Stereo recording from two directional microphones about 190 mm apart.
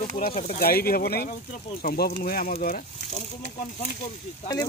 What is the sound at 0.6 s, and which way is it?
Speech, 50° left (ahead or behind).